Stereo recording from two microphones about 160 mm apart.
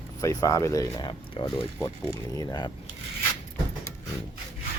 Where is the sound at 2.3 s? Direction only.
20° left (ahead or behind).